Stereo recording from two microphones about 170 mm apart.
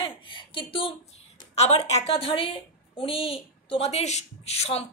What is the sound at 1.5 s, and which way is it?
A woman's voice, 40° left (ahead or behind).